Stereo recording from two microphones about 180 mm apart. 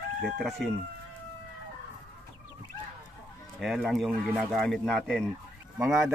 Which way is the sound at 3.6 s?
Centre (ahead or behind).